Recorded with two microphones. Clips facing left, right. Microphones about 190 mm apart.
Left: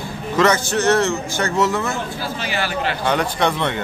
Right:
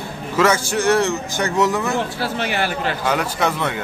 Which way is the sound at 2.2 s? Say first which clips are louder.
Right 2 dB; 60° right (ahead or behind).